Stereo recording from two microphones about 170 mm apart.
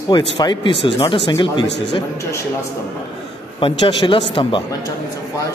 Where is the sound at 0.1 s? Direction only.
25° left (ahead or behind).